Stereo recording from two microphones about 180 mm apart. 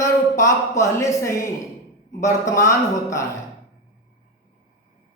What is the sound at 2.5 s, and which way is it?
Speech, 15° left (ahead or behind).